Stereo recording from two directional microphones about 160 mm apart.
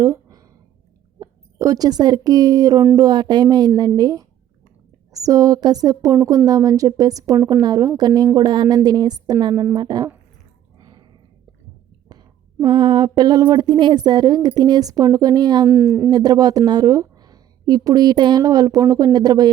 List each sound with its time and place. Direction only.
0.0 s a sound: 20° right (ahead or behind)
1.2 s speech: 20° right (ahead or behind)
10.8 s a sound: 25° right (ahead or behind)
12.6 s speech: 30° right (ahead or behind)
15.7 s speech: 10° right (ahead or behind)
16.0 s speech: 25° right (ahead or behind)